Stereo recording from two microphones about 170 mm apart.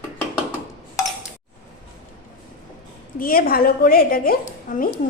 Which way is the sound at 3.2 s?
60° left (ahead or behind).